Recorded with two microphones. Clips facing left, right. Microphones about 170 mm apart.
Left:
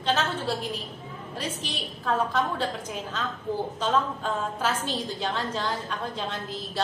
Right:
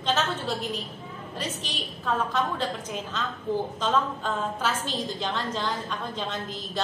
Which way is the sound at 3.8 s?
10° left (ahead or behind).